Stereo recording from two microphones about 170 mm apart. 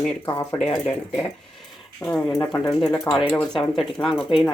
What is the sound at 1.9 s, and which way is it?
Speech, 5° left (ahead or behind).